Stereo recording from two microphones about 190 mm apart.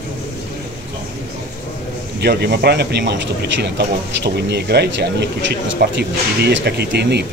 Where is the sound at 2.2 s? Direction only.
60° right (ahead or behind).